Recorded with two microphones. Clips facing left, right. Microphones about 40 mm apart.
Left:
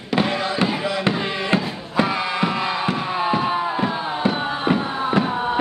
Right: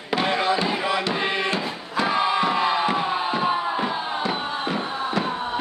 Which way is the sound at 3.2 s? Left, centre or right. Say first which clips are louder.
Left 2 dB; centre.